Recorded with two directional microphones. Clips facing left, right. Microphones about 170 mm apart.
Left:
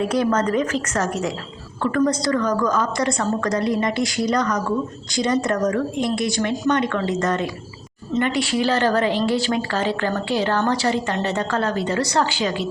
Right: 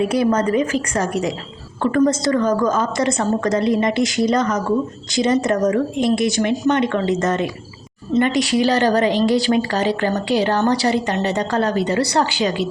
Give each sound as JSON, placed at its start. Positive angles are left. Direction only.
{"t": 0.1, "sound": "a woman's voice", "side_deg": -10}
{"t": 1.8, "sound": "a woman's voice", "side_deg": -25}